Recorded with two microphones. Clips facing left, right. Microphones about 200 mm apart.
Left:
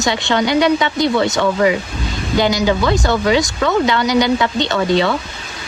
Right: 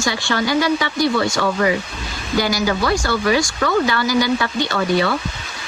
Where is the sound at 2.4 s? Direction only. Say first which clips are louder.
Left 4 dB; 20° left (ahead or behind).